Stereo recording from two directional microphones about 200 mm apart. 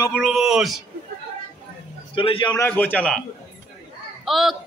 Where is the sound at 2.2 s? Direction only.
25° left (ahead or behind).